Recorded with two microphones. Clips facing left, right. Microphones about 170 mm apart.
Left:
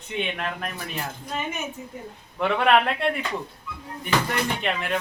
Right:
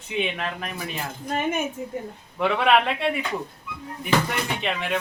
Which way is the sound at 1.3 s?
55° right (ahead or behind).